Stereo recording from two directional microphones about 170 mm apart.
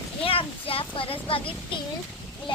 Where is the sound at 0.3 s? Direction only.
35° left (ahead or behind).